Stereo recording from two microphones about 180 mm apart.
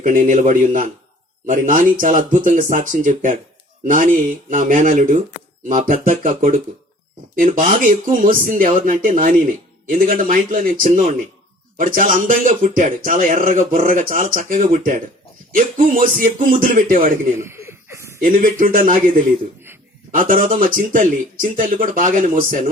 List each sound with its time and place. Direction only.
0.0 s a man's voice: 45° right (ahead or behind)
17.4 s laughter: 15° right (ahead or behind)
18.2 s a man's voice: 50° right (ahead or behind)